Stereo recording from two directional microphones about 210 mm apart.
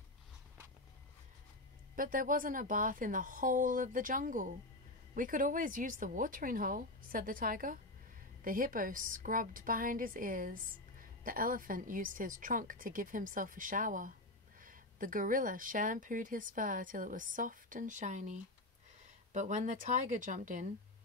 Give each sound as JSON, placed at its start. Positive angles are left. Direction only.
{"t": 2.0, "sound": "speech", "side_deg": -40}